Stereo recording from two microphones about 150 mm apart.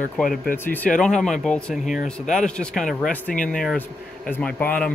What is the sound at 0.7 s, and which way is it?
A man's voice, 10° left (ahead or behind).